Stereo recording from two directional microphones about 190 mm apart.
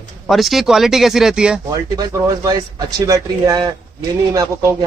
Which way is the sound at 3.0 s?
20° right (ahead or behind).